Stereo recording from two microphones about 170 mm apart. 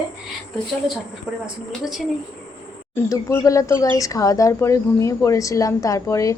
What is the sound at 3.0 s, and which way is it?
A woman's voice, 20° left (ahead or behind).